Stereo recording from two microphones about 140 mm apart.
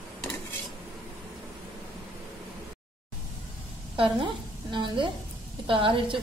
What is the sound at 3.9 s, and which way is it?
A woman's voice, 35° right (ahead or behind).